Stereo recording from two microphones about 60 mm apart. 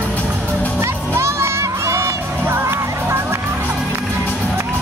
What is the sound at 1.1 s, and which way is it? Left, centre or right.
Music, right.